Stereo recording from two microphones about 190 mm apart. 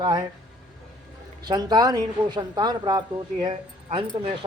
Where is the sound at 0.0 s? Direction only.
25° right (ahead or behind).